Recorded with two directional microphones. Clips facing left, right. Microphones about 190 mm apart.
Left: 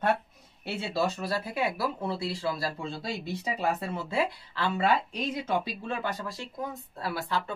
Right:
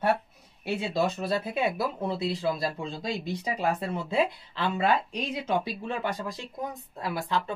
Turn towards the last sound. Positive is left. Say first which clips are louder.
# right 2 dB
turn(degrees=-15)  # may be behind; listen again after turning